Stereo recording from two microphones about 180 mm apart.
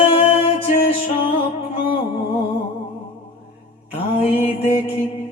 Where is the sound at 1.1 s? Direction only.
35° left (ahead or behind).